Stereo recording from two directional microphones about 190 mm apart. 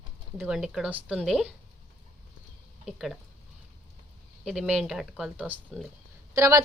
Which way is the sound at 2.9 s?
Centre (ahead or behind).